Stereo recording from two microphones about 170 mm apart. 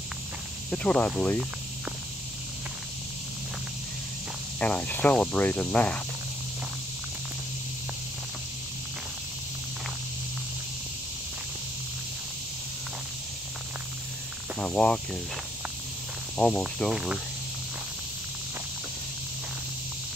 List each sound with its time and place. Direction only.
0.7 s speech: 5° left (ahead or behind)
4.6 s speech: 10° left (ahead or behind)
14.6 s speech: 5° left (ahead or behind)
16.3 s speech: 5° left (ahead or behind)